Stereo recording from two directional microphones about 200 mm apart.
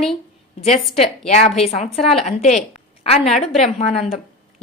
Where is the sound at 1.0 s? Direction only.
35° left (ahead or behind).